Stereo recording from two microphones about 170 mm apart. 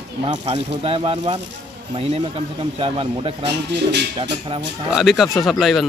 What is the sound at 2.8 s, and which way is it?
Speech, 30° right (ahead or behind).